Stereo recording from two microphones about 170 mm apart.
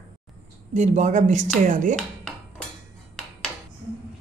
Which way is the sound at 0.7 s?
45° right (ahead or behind).